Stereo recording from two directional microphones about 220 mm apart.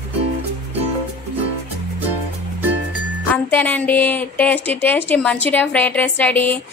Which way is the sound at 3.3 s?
10° left (ahead or behind).